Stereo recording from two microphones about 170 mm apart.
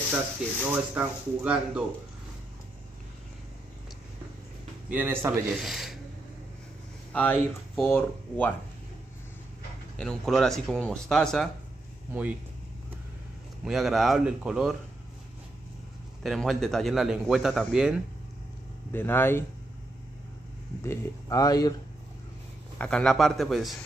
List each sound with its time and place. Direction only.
0.7 s speech: 10° right (ahead or behind)
4.8 s speech: 10° right (ahead or behind)
5.6 s speech: centre (ahead or behind)
7.1 s speech: 10° left (ahead or behind)
9.9 s speech: 5° left (ahead or behind)
12.1 s speech: 10° right (ahead or behind)
13.7 s speech: centre (ahead or behind)
16.2 s speech: centre (ahead or behind)
18.9 s speech: 15° left (ahead or behind)
20.8 s speech: 15° left (ahead or behind)
22.8 s speech: 5° left (ahead or behind)